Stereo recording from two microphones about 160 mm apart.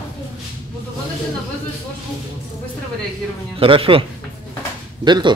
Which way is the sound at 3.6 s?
35° right (ahead or behind).